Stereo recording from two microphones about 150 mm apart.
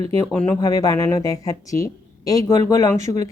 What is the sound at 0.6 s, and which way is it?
Speech, 25° left (ahead or behind).